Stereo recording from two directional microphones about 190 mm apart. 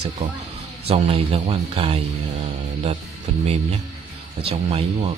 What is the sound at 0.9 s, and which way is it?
Music, 30° right (ahead or behind).